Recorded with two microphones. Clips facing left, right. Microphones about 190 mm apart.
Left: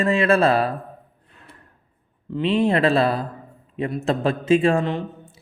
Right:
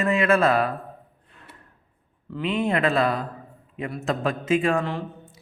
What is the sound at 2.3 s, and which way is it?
Speech, 30° left (ahead or behind).